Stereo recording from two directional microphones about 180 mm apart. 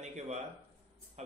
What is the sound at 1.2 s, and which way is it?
Music, 40° right (ahead or behind).